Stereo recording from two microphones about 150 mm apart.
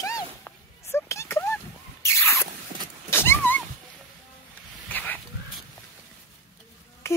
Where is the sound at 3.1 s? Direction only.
15° left (ahead or behind).